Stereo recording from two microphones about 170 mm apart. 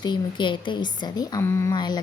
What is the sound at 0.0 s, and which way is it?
A woman's voice, 25° left (ahead or behind).